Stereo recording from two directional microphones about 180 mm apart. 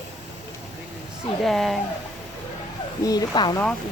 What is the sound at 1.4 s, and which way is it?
Speech, centre (ahead or behind).